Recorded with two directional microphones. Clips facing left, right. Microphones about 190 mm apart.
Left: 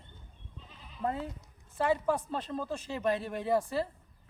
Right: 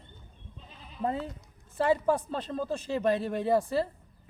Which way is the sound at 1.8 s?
35° right (ahead or behind).